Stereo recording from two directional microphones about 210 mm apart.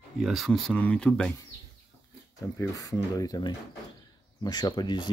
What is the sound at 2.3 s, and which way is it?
Speech, 15° left (ahead or behind).